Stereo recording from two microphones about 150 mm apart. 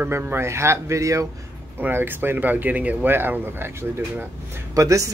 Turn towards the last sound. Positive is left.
turn(degrees=-20)  # may be behind; listen again after turning